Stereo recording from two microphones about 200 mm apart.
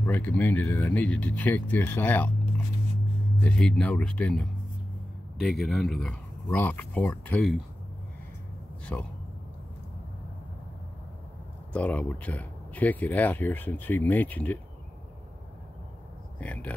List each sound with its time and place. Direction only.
0.0 s speech: 10° left (ahead or behind)
3.3 s speech: 5° left (ahead or behind)
8.9 s speech: 5° left (ahead or behind)
11.7 s speech: 5° left (ahead or behind)
16.3 s speech: 5° left (ahead or behind)